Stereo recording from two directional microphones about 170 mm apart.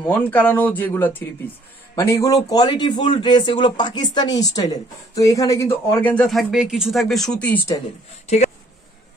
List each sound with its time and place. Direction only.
0.0 s speech: 10° left (ahead or behind)